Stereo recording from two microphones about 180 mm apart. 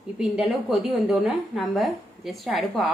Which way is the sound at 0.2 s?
Centre (ahead or behind).